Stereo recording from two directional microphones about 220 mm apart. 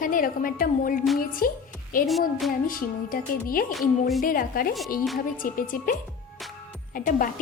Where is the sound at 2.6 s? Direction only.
40° left (ahead or behind).